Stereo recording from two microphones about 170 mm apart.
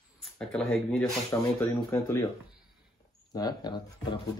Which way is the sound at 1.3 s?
15° left (ahead or behind).